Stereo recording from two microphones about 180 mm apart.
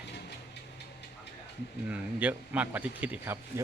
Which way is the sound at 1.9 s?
10° right (ahead or behind).